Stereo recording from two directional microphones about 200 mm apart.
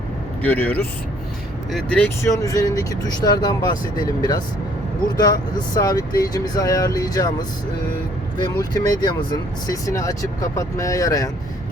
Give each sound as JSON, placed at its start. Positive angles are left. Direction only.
{"t": 0.4, "sound": "speech", "side_deg": 10}
{"t": 8.5, "sound": "speech", "side_deg": 20}